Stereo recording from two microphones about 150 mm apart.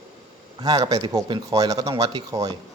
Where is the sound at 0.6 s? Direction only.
25° right (ahead or behind).